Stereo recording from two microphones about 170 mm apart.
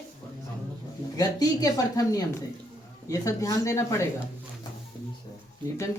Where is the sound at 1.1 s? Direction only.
20° left (ahead or behind).